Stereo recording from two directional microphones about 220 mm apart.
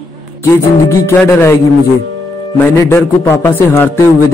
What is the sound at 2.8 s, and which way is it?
A man's voice, 10° left (ahead or behind).